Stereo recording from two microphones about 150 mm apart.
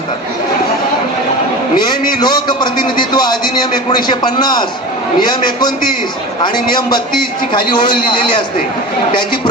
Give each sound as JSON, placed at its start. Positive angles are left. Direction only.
{"t": 2.2, "sound": "a man's voice", "side_deg": 30}
{"t": 6.7, "sound": "a man's voice", "side_deg": 30}